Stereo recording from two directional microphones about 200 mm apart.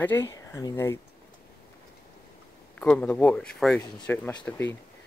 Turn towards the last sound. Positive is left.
turn(degrees=5)  # may be behind; listen again after turning